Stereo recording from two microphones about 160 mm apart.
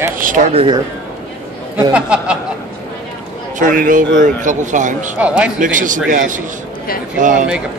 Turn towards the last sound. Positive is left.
turn(degrees=-55)  # may be behind; listen again after turning